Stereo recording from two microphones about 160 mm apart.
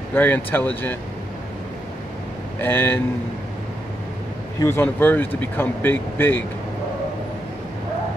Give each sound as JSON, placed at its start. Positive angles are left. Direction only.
{"t": 0.1, "sound": "speech", "side_deg": 10}
{"t": 2.6, "sound": "speech", "side_deg": 15}
{"t": 4.6, "sound": "speech", "side_deg": 15}